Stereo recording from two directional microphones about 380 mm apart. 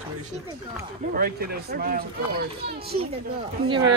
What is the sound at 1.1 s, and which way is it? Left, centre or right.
Speech, right.